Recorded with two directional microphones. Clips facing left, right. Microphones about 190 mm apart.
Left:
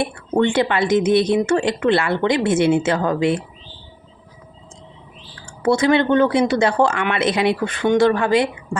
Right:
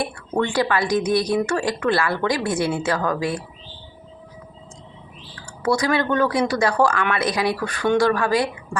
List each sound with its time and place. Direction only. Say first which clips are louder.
0.0 s speech: left 5 dB; 25° left (ahead or behind)
5.6 s speech: left 5 dB; 25° left (ahead or behind)